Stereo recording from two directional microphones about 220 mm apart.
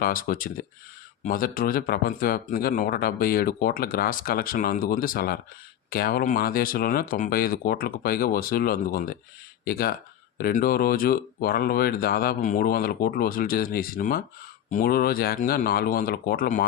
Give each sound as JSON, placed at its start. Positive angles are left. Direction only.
{"t": 0.0, "sound": "speech", "side_deg": 40}